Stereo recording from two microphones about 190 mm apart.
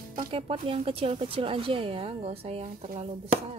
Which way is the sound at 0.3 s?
30° right (ahead or behind).